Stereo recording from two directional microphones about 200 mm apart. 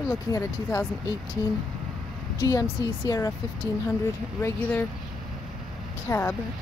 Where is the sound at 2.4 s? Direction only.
15° left (ahead or behind).